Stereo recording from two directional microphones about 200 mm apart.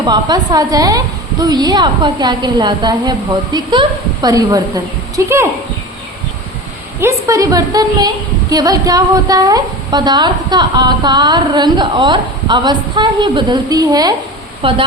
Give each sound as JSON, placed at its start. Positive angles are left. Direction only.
{"t": 0.1, "sound": "a woman's voice", "side_deg": -20}
{"t": 7.0, "sound": "a woman's voice", "side_deg": -15}